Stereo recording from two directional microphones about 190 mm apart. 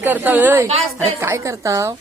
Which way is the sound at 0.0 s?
10° right (ahead or behind).